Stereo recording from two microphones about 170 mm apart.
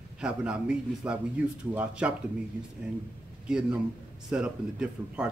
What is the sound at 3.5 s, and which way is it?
Speech, 5° right (ahead or behind).